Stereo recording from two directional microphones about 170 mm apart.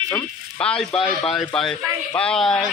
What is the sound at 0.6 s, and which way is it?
Speech, 5° left (ahead or behind).